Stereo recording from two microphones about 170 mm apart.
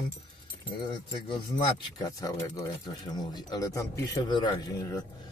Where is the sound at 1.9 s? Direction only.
20° left (ahead or behind).